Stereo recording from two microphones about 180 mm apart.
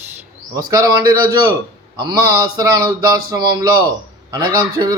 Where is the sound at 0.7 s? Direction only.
20° right (ahead or behind).